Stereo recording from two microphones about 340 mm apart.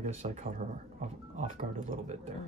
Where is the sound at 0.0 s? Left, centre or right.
Right.